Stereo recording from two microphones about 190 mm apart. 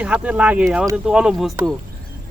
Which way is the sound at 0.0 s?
5° right (ahead or behind).